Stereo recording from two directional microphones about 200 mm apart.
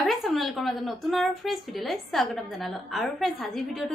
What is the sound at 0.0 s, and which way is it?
A woman's voice, centre (ahead or behind).